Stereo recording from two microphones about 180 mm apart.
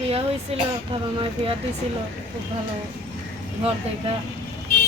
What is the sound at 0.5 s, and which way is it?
Speech, 35° right (ahead or behind).